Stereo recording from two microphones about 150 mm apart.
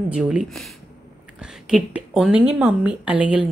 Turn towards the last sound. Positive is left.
turn(degrees=-10)  # may be behind; listen again after turning